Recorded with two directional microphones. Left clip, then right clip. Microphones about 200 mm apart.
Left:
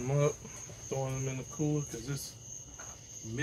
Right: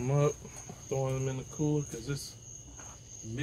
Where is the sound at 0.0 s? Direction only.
45° right (ahead or behind).